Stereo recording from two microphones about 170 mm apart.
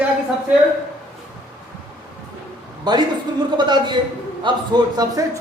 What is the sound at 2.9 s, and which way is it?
A man's voice, 25° right (ahead or behind).